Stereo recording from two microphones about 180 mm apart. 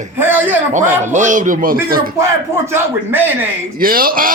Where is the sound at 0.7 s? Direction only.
45° right (ahead or behind).